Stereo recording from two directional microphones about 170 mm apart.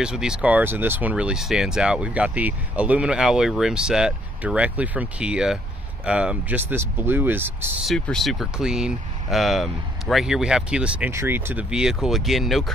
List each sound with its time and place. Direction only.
0.0 s speech: 5° right (ahead or behind)
7.8 s speech: centre (ahead or behind)